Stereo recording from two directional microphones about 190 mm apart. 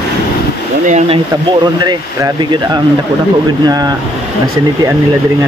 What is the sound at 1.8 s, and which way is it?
Speech, 20° right (ahead or behind).